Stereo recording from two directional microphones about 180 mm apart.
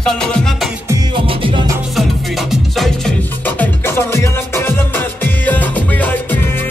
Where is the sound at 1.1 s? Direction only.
25° right (ahead or behind).